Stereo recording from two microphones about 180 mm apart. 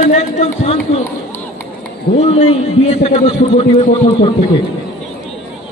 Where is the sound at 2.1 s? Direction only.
35° left (ahead or behind).